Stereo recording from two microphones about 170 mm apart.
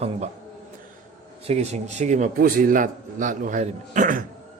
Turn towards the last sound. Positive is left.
turn(degrees=-50)  # may be behind; listen again after turning